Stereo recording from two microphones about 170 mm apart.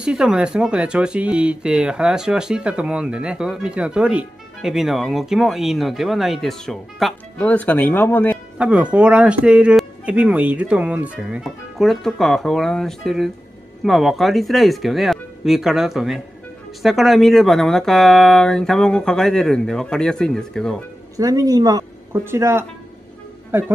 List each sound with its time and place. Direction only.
0.0 s speech: 5° right (ahead or behind); by 8.4 s 10° left (ahead or behind)
8.5 s speech: 5° right (ahead or behind)
21.2 s speech: 20° right (ahead or behind)